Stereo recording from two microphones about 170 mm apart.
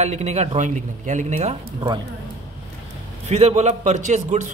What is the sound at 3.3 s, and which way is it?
A man's voice, 40° right (ahead or behind).